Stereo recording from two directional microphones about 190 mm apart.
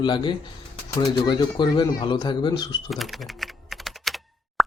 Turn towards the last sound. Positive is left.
turn(degrees=0)  # may be behind; listen again after turning